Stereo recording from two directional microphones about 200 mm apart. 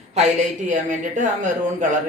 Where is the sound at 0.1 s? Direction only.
35° right (ahead or behind).